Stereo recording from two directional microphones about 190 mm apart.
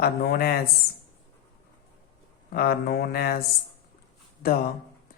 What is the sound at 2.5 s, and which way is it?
Speech, 55° left (ahead or behind).